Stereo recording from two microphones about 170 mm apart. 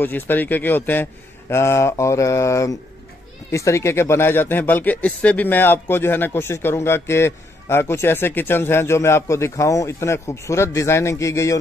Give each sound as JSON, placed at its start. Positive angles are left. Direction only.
{"t": 0.0, "sound": "speech", "side_deg": 10}